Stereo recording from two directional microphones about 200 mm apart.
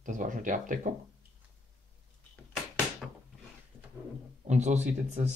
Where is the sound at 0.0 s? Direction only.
40° right (ahead or behind).